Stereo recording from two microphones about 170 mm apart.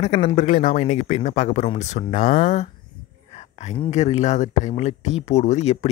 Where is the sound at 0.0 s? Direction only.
40° left (ahead or behind).